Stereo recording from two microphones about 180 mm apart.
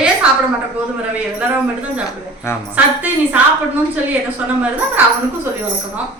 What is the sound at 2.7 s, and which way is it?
Speech, 10° right (ahead or behind).